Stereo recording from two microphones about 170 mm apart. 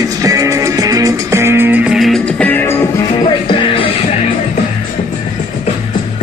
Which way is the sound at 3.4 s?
30° left (ahead or behind).